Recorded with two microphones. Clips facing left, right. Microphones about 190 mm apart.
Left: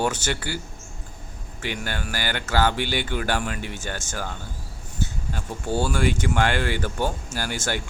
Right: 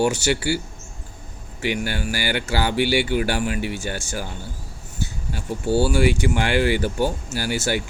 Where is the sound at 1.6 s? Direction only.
10° right (ahead or behind).